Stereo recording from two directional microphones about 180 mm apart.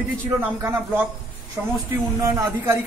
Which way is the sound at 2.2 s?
15° right (ahead or behind).